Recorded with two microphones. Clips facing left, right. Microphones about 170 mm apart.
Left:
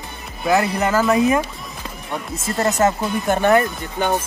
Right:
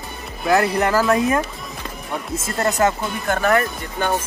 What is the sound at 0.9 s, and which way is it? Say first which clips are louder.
Speech: left 4 dB; centre (ahead or behind).